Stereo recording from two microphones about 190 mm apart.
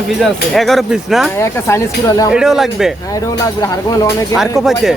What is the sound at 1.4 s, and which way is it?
Speech, 15° left (ahead or behind).